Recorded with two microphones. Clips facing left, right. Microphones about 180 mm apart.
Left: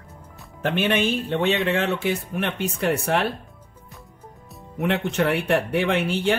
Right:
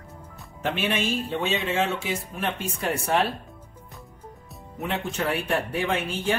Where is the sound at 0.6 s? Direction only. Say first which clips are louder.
Left 4 dB; 60° left (ahead or behind).